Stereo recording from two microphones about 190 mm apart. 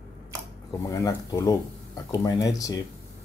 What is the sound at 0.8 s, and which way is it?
Speech, 20° left (ahead or behind).